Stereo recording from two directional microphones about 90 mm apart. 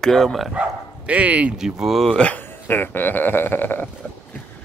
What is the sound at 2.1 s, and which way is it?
Speech, 15° left (ahead or behind).